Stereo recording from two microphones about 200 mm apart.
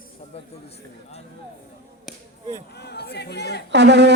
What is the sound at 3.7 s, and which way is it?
Speech, 60° right (ahead or behind).